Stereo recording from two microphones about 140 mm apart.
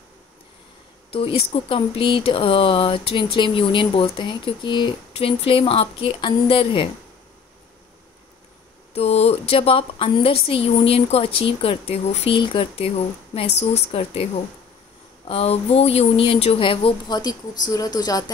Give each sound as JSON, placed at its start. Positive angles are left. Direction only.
{"t": 1.1, "sound": "speech", "side_deg": 40}
{"t": 8.9, "sound": "a woman's voice", "side_deg": 45}
{"t": 12.4, "sound": "a woman's voice", "side_deg": 40}
{"t": 15.2, "sound": "speech", "side_deg": 45}